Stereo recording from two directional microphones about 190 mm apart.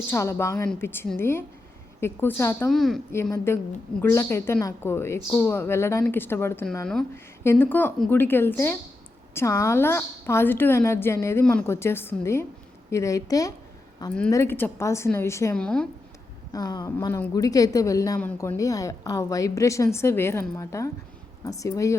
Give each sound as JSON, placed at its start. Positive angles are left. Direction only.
{"t": 0.1, "sound": "a woman's voice", "side_deg": 15}
{"t": 2.6, "sound": "a woman's voice", "side_deg": 0}
{"t": 3.3, "sound": "a woman's voice", "side_deg": 15}
{"t": 16.5, "sound": "a woman's voice", "side_deg": 20}